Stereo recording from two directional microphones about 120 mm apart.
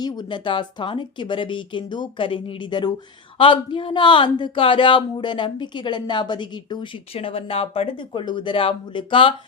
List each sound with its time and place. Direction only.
0.0 s speech: 35° left (ahead or behind)
7.1 s speech: 55° left (ahead or behind)